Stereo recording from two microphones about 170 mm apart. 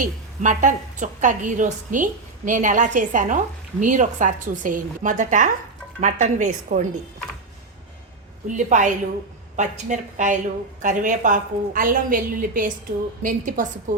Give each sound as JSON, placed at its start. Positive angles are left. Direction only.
{"t": 0.0, "sound": "a woman's voice", "side_deg": -50}
{"t": 8.4, "sound": "a woman's voice", "side_deg": -45}